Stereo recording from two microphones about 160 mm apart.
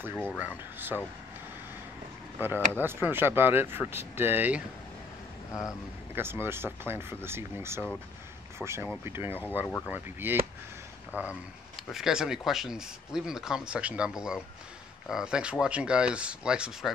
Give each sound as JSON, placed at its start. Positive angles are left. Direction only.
{"t": 0.4, "sound": "speech", "side_deg": -10}
{"t": 2.3, "sound": "speech", "side_deg": -10}
{"t": 5.5, "sound": "speech", "side_deg": 20}
{"t": 6.1, "sound": "speech", "side_deg": -15}